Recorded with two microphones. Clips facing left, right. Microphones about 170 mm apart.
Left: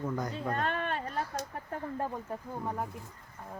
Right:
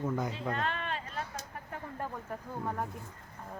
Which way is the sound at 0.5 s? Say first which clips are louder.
Left 3 dB; 50° left (ahead or behind).